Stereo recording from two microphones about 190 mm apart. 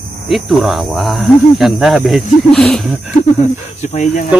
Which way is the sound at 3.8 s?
40° left (ahead or behind).